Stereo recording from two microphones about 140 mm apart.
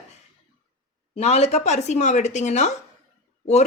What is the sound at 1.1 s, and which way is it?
Speech, 50° left (ahead or behind).